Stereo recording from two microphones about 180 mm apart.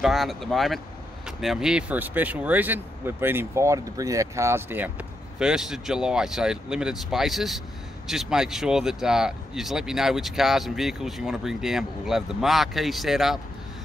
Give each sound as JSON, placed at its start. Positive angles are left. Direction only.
{"t": 0.0, "sound": "speech", "side_deg": 0}